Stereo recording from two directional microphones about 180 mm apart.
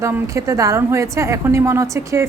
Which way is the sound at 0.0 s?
15° right (ahead or behind).